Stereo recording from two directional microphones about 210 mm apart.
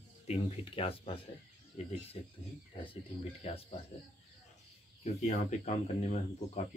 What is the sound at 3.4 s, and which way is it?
Speech, 25° left (ahead or behind).